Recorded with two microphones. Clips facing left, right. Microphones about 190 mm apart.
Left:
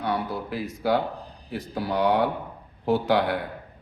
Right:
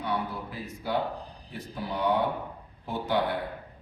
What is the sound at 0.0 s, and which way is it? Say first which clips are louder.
Speech: left 4 dB; 85° left.